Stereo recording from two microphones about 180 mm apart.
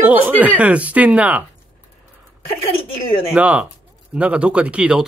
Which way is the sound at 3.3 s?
5° right (ahead or behind).